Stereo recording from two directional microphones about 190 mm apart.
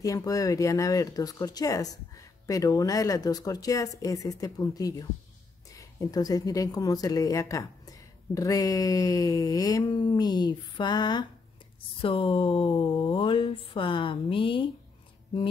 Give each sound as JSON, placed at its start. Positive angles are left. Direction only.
{"t": 0.0, "sound": "speech", "side_deg": 20}